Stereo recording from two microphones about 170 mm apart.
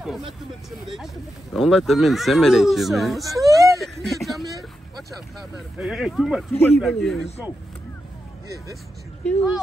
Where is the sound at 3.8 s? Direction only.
Centre (ahead or behind).